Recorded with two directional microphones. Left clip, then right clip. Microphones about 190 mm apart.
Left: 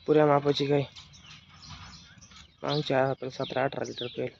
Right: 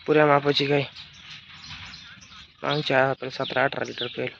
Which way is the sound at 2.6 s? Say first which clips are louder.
Right 5 dB; centre (ahead or behind).